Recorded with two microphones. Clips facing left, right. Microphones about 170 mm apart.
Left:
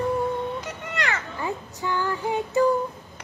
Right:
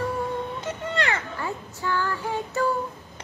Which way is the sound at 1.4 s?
20° left (ahead or behind).